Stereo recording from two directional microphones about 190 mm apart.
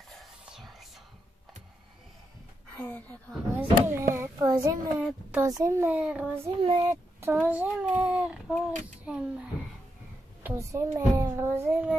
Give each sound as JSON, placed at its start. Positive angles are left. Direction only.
{"t": 0.1, "sound": "whispering", "side_deg": 0}
{"t": 2.7, "sound": "a woman's voice", "side_deg": 5}
{"t": 3.5, "sound": "a child's voice", "side_deg": -10}
{"t": 6.6, "sound": "speech", "side_deg": -25}
{"t": 6.9, "sound": "speech", "side_deg": -10}